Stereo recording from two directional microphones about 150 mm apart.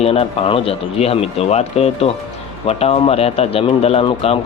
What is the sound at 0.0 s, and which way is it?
Speech, 40° left (ahead or behind).